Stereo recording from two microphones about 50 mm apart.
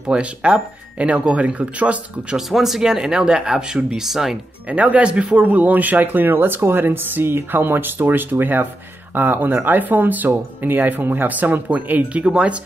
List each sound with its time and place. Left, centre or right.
0.0 s speech: right
2.3 s speech: centre
4.6 s speech: right